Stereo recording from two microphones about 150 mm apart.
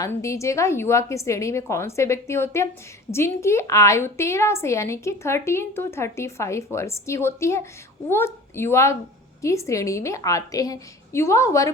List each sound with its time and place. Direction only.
0.0 s a woman's voice: 20° left (ahead or behind)